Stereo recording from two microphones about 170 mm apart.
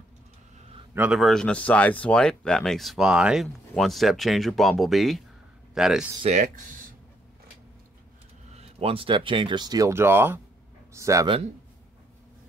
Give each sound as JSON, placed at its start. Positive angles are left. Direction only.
{"t": 0.9, "sound": "speech", "side_deg": -5}
{"t": 6.2, "sound": "speech", "side_deg": -45}
{"t": 8.5, "sound": "speech", "side_deg": -35}